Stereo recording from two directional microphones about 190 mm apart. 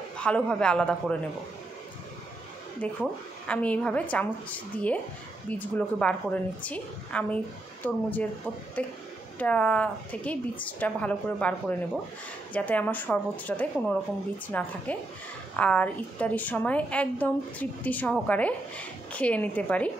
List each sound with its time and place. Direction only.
0.2 s speech: 5° left (ahead or behind)
2.8 s a woman's voice: 5° left (ahead or behind)
12.5 s a woman's voice: 10° left (ahead or behind)